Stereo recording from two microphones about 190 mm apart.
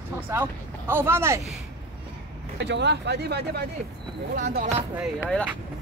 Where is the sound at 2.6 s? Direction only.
65° right (ahead or behind).